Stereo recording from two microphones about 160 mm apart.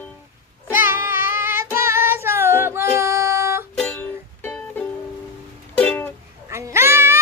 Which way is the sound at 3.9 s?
10° left (ahead or behind).